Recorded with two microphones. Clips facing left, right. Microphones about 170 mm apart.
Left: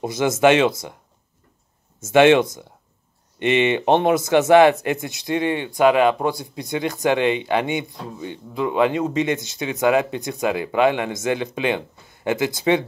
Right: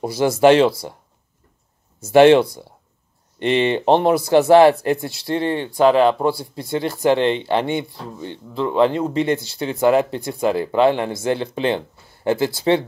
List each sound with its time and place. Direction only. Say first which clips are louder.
0.0 s speech: right 2 dB; 20° left (ahead or behind)
2.0 s speech: right 3 dB; 20° left (ahead or behind)